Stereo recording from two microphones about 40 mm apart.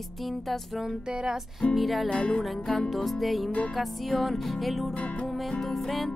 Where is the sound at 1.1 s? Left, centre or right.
Centre.